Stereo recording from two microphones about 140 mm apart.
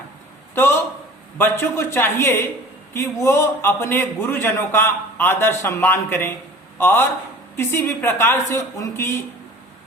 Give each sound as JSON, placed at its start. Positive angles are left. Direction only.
{"t": 1.4, "sound": "a man's voice", "side_deg": 15}